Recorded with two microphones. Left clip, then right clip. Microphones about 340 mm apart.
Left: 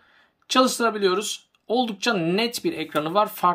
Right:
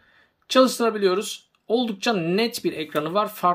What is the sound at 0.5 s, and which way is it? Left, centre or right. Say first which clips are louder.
Speech: right 1 dB; centre.